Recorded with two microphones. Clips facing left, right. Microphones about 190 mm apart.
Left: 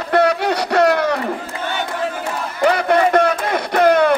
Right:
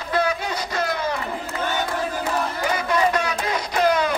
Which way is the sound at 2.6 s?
65° left (ahead or behind).